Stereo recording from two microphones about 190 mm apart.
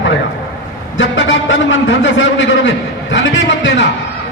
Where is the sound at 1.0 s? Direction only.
75° left (ahead or behind).